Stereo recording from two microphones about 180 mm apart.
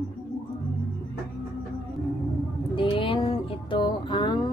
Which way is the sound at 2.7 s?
30° left (ahead or behind).